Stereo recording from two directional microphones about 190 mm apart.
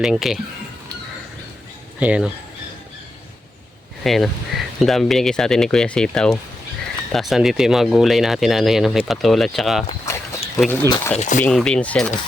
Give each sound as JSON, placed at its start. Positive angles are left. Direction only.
{"t": 0.0, "sound": "speech", "side_deg": 0}
{"t": 2.0, "sound": "speech", "side_deg": -5}
{"t": 4.0, "sound": "speech", "side_deg": 0}
{"t": 10.1, "sound": "a sound", "side_deg": 15}
{"t": 10.7, "sound": "speech", "side_deg": 10}
{"t": 11.2, "sound": "speech", "side_deg": 40}
{"t": 11.4, "sound": "speech", "side_deg": 5}